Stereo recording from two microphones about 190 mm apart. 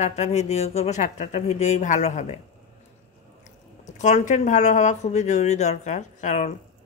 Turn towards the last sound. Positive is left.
turn(degrees=40)  # may be behind; listen again after turning